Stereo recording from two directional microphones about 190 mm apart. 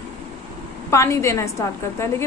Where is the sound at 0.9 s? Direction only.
15° left (ahead or behind).